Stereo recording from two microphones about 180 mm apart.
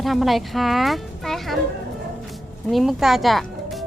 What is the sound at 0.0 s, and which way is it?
Speech, centre (ahead or behind).